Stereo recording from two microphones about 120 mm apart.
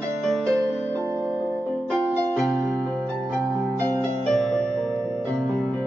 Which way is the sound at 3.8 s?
30° right (ahead or behind).